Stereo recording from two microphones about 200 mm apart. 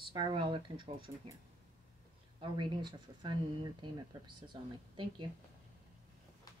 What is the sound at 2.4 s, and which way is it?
Speech, 25° right (ahead or behind).